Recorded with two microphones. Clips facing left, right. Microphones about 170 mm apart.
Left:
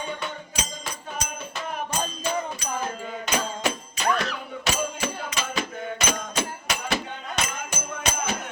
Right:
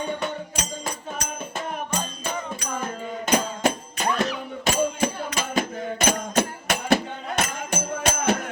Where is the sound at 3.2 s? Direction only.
50° right (ahead or behind).